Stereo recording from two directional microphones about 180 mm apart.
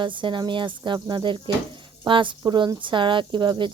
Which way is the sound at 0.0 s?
25° right (ahead or behind).